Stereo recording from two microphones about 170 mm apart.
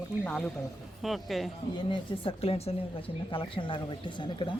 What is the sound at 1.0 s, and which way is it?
Speech, centre (ahead or behind).